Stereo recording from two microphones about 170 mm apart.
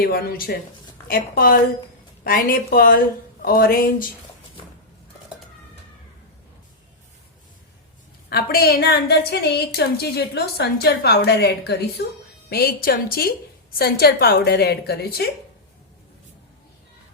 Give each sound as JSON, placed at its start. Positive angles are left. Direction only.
{"t": 0.0, "sound": "a woman's voice", "side_deg": 60}
{"t": 8.3, "sound": "a woman's voice", "side_deg": 65}